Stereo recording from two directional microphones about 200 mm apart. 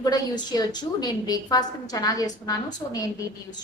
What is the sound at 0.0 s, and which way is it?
A woman's voice, 20° left (ahead or behind).